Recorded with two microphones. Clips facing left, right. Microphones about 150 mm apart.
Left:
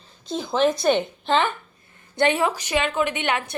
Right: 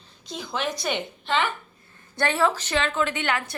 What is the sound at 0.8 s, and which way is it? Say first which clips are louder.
Speech: left 8 dB; 35° left (ahead or behind).